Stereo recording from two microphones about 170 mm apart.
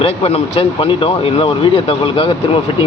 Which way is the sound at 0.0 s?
35° left (ahead or behind).